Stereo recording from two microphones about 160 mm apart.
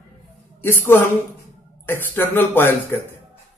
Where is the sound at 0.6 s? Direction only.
15° left (ahead or behind).